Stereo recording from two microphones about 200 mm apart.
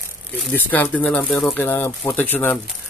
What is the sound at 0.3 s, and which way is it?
Speech, 5° left (ahead or behind).